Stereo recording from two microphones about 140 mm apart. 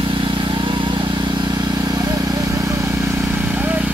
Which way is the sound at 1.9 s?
30° right (ahead or behind).